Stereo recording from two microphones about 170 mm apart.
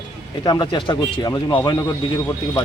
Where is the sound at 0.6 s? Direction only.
25° left (ahead or behind).